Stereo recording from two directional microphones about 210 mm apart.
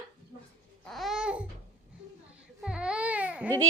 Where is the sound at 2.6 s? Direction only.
5° right (ahead or behind).